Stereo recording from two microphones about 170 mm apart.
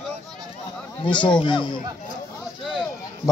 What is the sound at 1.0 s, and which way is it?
A man's voice, 30° left (ahead or behind).